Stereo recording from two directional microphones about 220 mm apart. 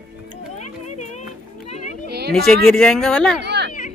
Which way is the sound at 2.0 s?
50° right (ahead or behind).